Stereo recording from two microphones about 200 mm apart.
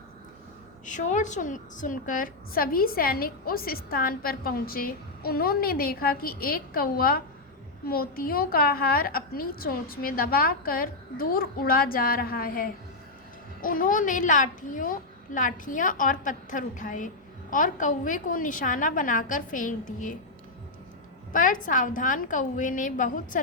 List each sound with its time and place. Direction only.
0.9 s a woman's voice: 40° left (ahead or behind)
21.3 s a woman's voice: 40° left (ahead or behind)